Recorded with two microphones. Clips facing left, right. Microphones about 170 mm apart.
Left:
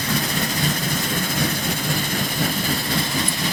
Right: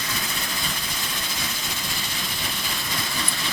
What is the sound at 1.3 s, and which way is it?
Vehicle, 55° left (ahead or behind).